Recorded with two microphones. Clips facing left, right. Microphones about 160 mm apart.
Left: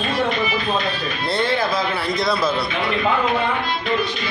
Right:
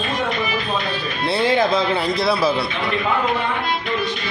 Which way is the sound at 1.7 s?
25° right (ahead or behind).